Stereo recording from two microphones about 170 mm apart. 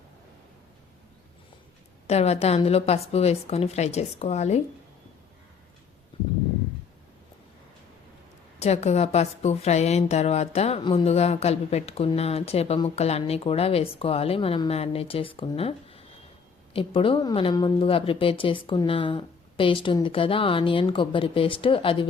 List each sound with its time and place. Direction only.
2.0 s a woman's voice: 40° left (ahead or behind)
8.5 s a woman's voice: 40° left (ahead or behind)